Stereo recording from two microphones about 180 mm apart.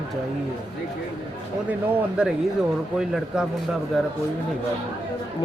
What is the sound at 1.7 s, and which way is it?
A man's voice, 10° right (ahead or behind).